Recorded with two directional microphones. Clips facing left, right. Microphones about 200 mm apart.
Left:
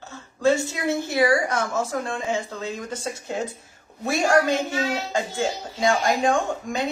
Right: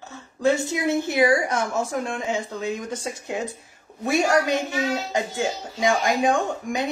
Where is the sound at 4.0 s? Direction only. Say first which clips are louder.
Even; 15° right (ahead or behind).